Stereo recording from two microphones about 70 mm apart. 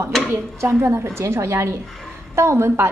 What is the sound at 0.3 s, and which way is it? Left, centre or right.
A woman's voice, right.